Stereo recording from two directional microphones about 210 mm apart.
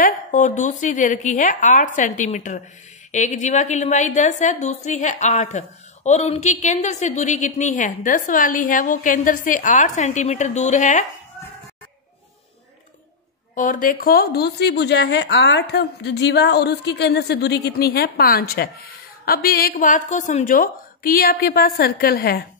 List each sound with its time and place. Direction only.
0.0 s a woman's voice: 40° left (ahead or behind)
13.6 s a woman's voice: 40° left (ahead or behind)